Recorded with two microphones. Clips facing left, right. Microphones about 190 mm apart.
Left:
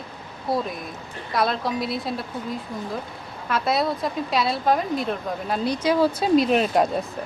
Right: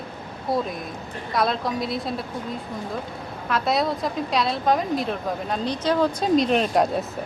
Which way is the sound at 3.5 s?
Centre (ahead or behind).